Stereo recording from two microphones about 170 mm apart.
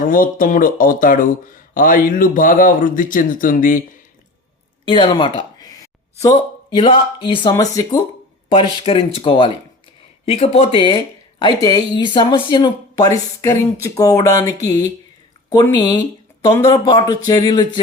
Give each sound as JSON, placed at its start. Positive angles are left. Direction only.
{"t": 0.0, "sound": "speech", "side_deg": 55}
{"t": 4.9, "sound": "speech", "side_deg": 30}
{"t": 5.4, "sound": "a sound", "side_deg": 25}
{"t": 6.7, "sound": "speech", "side_deg": 30}
{"t": 8.4, "sound": "speech", "side_deg": 35}